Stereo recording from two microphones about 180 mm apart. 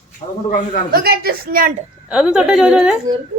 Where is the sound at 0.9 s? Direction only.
60° right (ahead or behind).